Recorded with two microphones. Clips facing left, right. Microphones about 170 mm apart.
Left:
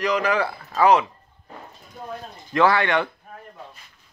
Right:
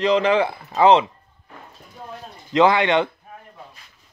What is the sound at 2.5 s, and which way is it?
Speech, 20° right (ahead or behind).